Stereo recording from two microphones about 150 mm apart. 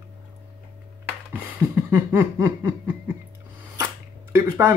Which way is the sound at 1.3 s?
10° right (ahead or behind).